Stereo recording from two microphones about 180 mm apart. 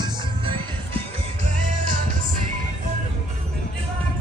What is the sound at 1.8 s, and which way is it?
Music, 50° right (ahead or behind).